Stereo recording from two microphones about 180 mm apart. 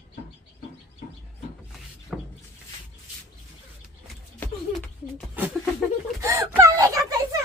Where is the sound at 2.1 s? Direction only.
Centre (ahead or behind).